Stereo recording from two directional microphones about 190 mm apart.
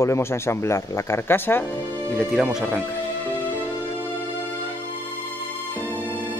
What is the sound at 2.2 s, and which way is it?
Speech, centre (ahead or behind).